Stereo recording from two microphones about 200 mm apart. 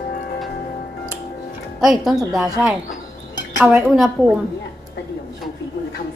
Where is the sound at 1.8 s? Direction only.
Centre (ahead or behind).